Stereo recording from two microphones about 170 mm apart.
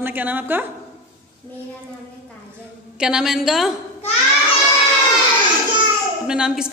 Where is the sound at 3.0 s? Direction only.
5° right (ahead or behind).